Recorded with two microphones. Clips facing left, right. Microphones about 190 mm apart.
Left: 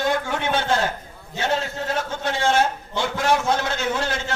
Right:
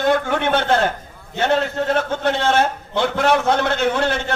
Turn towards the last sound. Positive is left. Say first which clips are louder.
# right 6 dB
turn(degrees=-60)  # may be behind; listen again after turning